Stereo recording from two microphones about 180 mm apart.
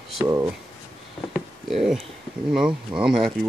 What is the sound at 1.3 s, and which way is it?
Speech, 5° right (ahead or behind).